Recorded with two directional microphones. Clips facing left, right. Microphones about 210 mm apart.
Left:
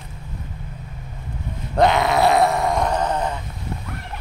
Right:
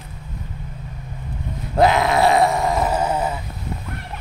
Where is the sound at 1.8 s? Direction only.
Centre (ahead or behind).